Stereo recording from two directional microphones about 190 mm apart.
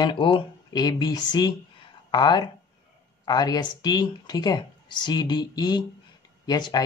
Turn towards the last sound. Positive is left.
turn(degrees=20)  # may be behind; listen again after turning